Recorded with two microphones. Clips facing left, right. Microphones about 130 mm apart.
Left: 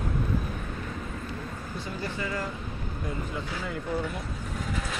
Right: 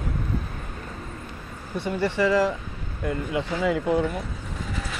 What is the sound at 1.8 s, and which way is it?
Speech, 70° right (ahead or behind).